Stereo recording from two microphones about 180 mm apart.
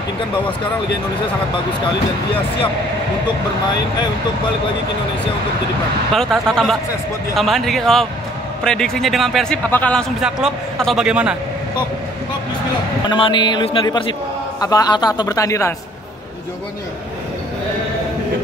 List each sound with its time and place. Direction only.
6.1 s a man's voice: centre (ahead or behind)
13.1 s a man's voice: 25° left (ahead or behind)